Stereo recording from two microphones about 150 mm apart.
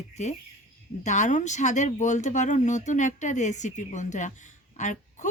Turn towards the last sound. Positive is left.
turn(degrees=55)  # may be behind; listen again after turning